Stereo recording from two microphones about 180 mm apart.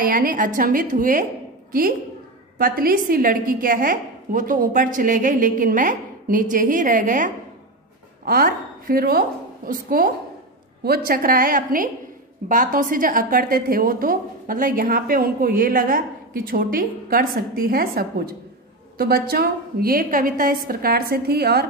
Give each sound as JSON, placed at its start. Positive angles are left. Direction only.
{"t": 0.0, "sound": "a woman's voice", "side_deg": -50}